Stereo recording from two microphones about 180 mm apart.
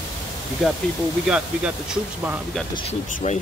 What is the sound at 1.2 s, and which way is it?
Speech, 5° right (ahead or behind).